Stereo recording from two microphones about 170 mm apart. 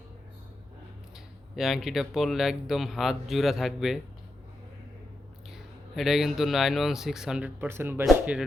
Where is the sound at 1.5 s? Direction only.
Centre (ahead or behind).